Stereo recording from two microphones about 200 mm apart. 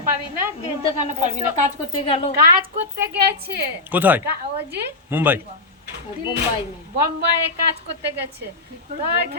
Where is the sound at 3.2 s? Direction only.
50° right (ahead or behind).